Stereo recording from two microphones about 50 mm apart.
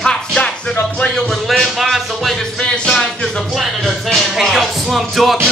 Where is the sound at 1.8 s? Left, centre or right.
Centre.